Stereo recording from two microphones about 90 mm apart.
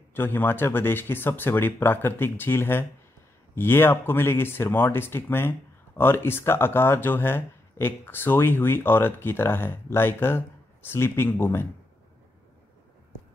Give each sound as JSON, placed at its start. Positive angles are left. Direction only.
{"t": 0.1, "sound": "speech", "side_deg": 25}